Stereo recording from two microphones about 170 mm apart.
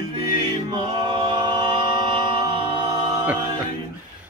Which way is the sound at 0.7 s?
30° right (ahead or behind).